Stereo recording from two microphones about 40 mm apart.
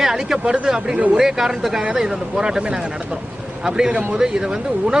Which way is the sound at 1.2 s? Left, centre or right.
Centre.